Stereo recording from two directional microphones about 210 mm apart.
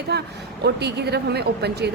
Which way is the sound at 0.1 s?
50° right (ahead or behind).